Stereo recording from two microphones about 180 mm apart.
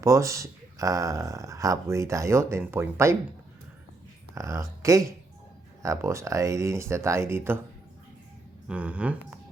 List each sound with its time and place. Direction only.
0.0 s speech: 15° right (ahead or behind)
4.4 s speech: 15° right (ahead or behind)
8.6 s speech: 5° right (ahead or behind)